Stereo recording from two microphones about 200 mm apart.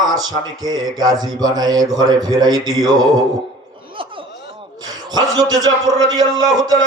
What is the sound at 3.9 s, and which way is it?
Chuckle, 25° right (ahead or behind).